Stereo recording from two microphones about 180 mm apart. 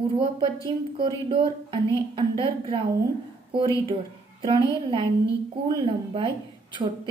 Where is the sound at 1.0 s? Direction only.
30° right (ahead or behind).